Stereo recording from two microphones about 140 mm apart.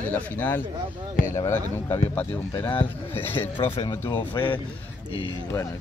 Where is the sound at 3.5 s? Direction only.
40° left (ahead or behind).